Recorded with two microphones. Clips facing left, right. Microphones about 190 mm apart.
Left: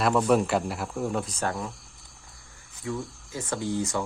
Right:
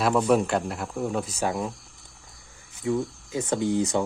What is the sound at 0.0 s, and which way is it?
Speech, centre (ahead or behind).